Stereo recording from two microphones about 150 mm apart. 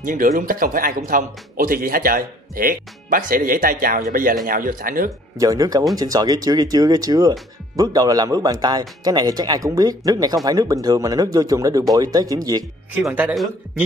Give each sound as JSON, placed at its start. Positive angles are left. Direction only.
{"t": 0.0, "sound": "speech", "side_deg": -65}
{"t": 5.4, "sound": "speech", "side_deg": -25}
{"t": 13.3, "sound": "a man's voice", "side_deg": 0}